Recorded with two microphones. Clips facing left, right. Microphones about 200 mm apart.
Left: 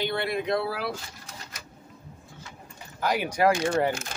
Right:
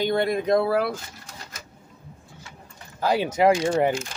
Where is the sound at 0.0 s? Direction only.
45° right (ahead or behind).